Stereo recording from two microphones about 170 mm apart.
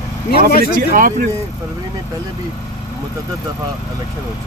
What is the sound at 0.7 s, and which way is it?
Speech, 55° right (ahead or behind).